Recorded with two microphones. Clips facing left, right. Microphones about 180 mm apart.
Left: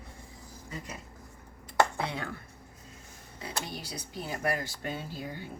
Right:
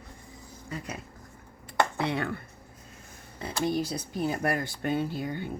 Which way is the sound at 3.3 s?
50° right (ahead or behind).